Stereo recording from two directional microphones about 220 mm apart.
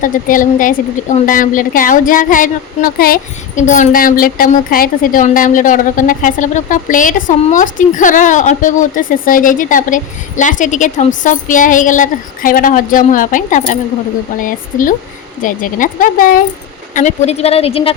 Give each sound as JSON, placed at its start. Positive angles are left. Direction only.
{"t": 0.0, "sound": "a woman's voice", "side_deg": 35}